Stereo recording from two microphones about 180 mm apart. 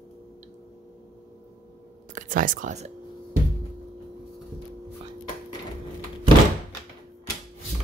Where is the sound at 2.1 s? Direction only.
50° right (ahead or behind).